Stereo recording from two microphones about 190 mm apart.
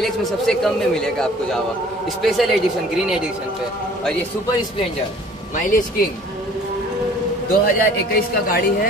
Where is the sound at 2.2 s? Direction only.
Centre (ahead or behind).